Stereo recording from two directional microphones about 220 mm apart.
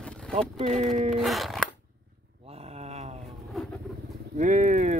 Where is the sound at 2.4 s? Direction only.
30° right (ahead or behind).